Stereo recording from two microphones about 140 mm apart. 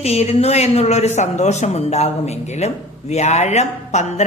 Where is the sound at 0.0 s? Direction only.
50° left (ahead or behind).